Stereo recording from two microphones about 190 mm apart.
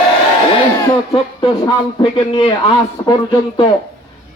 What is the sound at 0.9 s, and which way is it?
Speech, 25° left (ahead or behind).